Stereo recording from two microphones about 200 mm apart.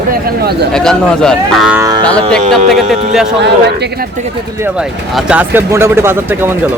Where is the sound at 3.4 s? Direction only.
55° right (ahead or behind).